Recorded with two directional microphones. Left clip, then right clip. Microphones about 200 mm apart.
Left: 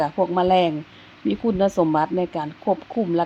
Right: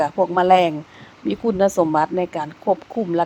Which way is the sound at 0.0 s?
30° right (ahead or behind).